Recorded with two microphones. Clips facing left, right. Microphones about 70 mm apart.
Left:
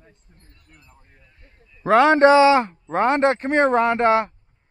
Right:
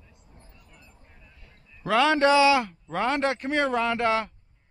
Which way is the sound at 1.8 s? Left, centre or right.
Left.